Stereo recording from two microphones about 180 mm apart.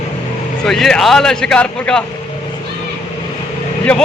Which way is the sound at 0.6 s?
Centre (ahead or behind).